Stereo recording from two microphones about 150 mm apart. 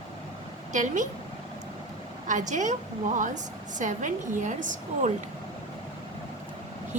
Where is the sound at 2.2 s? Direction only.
55° right (ahead or behind).